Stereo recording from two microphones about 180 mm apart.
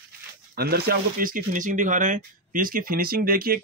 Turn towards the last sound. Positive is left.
turn(degrees=-55)  # may be behind; listen again after turning